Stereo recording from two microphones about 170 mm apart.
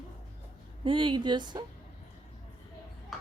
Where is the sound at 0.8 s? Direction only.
30° right (ahead or behind).